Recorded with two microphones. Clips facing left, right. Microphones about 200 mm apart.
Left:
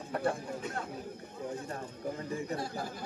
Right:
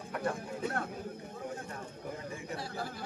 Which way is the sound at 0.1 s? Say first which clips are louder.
Left 3 dB; 30° left (ahead or behind).